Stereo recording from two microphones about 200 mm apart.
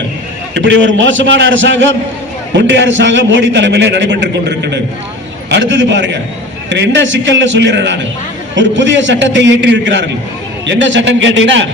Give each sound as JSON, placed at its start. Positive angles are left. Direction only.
{"t": 0.5, "sound": "a man's voice", "side_deg": -65}